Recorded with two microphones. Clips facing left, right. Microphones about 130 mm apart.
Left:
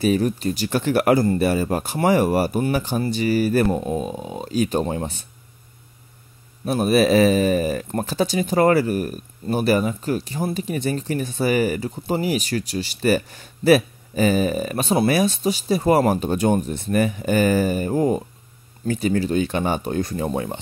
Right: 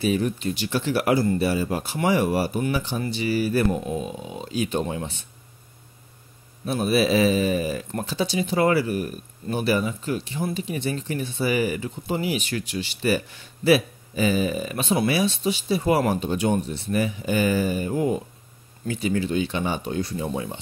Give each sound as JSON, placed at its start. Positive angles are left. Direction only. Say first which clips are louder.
{"t": 0.0, "sound": "speech", "louder": "left 4 dB", "side_deg": 40}
{"t": 6.6, "sound": "speech", "louder": "left 4 dB", "side_deg": 45}